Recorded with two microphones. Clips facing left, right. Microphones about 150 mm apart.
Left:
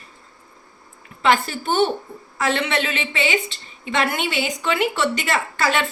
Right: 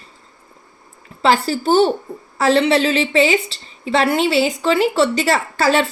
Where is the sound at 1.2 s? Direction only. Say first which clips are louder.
Right 4 dB; 35° right (ahead or behind).